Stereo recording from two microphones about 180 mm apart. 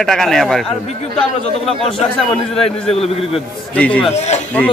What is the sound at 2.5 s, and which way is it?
Speech, 35° left (ahead or behind).